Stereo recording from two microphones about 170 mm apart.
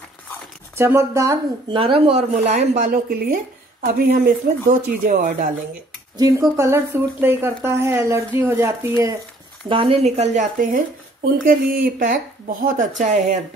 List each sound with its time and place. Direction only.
0.7 s speech: 15° right (ahead or behind)
1.8 s a woman's voice: 35° right (ahead or behind); by 5.5 s 55° right (ahead or behind)
6.1 s speech: 20° right (ahead or behind)
9.7 s a woman's voice: 30° right (ahead or behind)